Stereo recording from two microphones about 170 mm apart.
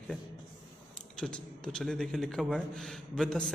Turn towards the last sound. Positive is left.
turn(degrees=5)  # may be behind; listen again after turning